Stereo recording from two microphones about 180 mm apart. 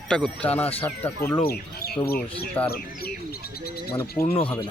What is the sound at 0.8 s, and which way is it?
Speech, 10° left (ahead or behind).